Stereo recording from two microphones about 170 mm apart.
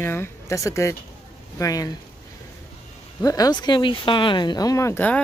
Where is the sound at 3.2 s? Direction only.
20° left (ahead or behind).